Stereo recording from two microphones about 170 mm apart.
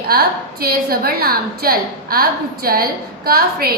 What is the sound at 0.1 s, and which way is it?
A woman's voice, 65° right (ahead or behind).